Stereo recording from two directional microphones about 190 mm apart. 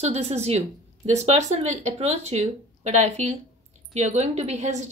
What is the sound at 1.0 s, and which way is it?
A woman's voice, 35° right (ahead or behind).